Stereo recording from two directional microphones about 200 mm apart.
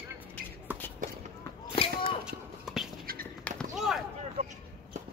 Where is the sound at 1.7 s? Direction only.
25° left (ahead or behind).